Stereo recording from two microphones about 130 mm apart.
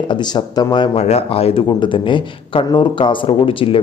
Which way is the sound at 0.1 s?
35° left (ahead or behind).